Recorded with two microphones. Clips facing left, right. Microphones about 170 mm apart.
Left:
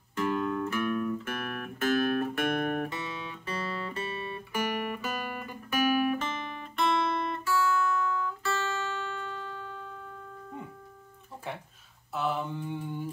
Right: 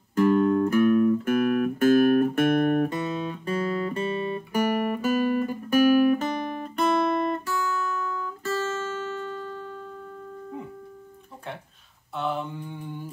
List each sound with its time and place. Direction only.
0.1 s music: 45° right (ahead or behind)
12.2 s mantra: centre (ahead or behind)